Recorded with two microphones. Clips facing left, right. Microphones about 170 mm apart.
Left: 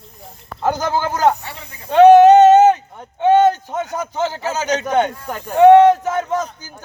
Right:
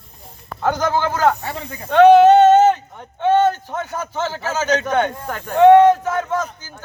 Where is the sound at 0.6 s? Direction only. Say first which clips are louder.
Even; 10° left (ahead or behind).